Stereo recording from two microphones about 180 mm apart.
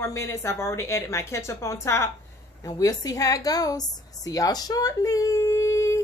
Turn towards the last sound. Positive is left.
turn(degrees=15)  # may be behind; listen again after turning